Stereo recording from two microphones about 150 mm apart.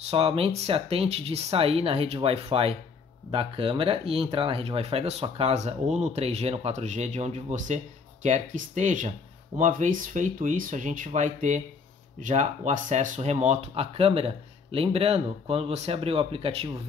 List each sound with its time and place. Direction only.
0.1 s speech: 40° right (ahead or behind)